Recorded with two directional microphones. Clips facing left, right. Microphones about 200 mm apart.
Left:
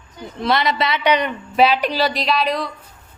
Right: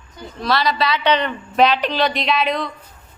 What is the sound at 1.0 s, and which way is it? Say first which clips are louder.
Speech: even; 10° left (ahead or behind).